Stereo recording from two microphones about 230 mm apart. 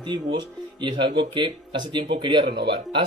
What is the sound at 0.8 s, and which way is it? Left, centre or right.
Speech, centre.